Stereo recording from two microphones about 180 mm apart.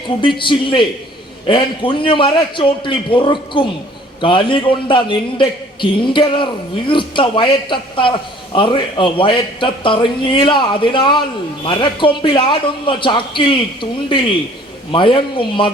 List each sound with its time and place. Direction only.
0.2 s a man's voice: 25° left (ahead or behind)
14.9 s a man's voice: 25° left (ahead or behind)